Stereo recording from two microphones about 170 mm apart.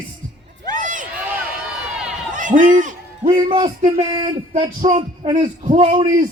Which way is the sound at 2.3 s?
50° right (ahead or behind).